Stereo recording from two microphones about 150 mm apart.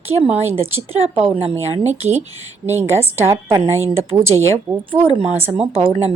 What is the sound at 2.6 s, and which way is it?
A woman's voice, 15° right (ahead or behind).